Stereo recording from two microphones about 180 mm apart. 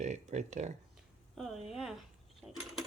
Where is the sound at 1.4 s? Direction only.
Centre (ahead or behind).